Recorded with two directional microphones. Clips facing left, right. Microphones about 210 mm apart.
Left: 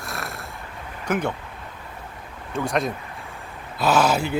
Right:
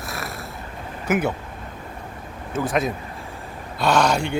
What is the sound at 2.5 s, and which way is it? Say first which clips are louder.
Speech: right 1 dB; 5° right (ahead or behind).